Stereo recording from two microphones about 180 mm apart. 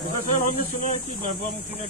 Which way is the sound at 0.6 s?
45° left (ahead or behind).